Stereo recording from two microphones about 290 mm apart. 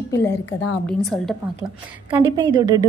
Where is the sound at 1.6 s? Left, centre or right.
Centre.